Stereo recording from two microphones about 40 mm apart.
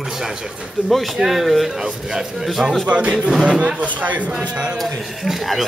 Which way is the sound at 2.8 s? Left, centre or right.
Right.